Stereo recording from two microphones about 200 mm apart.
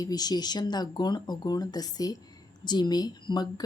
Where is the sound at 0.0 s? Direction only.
20° left (ahead or behind).